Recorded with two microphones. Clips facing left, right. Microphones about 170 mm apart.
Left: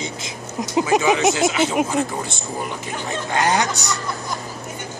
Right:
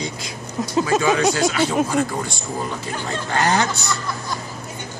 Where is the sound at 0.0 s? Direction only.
20° left (ahead or behind).